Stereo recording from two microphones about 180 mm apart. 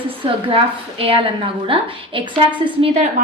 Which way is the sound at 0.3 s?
30° right (ahead or behind).